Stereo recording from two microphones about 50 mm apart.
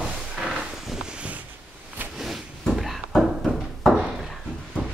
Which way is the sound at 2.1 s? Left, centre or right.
Centre.